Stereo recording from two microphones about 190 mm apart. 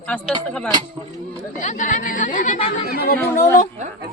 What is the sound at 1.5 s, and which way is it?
Speech, 40° left (ahead or behind).